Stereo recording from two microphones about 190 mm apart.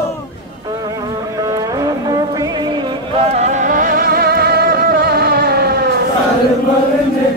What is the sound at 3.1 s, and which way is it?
Vehicle, 35° right (ahead or behind).